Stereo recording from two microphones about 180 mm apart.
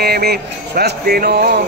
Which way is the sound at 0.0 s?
60° right (ahead or behind).